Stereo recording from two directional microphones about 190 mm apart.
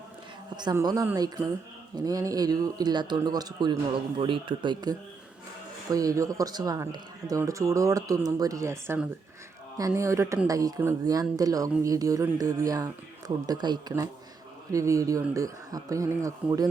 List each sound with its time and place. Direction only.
0.5 s speech: 20° right (ahead or behind)